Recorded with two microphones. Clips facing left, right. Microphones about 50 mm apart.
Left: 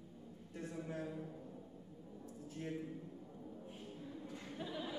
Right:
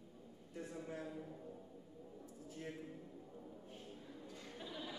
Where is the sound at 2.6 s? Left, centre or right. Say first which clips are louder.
Left 5 dB; centre.